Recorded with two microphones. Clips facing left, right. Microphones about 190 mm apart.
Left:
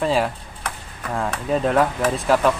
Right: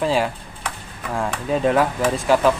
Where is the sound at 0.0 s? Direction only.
Centre (ahead or behind).